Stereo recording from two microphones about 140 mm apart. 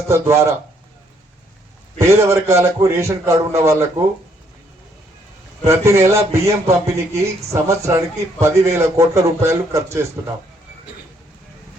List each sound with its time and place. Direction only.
0.1 s speech: 20° right (ahead or behind)
2.0 s speech: 20° right (ahead or behind)
5.6 s speech: 20° right (ahead or behind)